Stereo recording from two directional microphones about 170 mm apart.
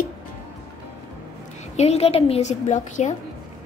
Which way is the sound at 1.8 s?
40° left (ahead or behind).